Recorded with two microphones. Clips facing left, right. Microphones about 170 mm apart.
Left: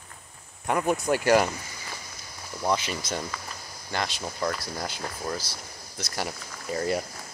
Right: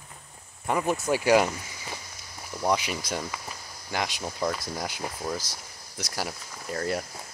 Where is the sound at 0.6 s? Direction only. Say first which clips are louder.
Left 1 dB; centre (ahead or behind).